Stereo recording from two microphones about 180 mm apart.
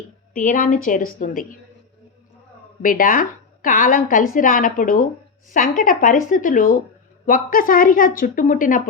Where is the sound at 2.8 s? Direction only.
50° left (ahead or behind).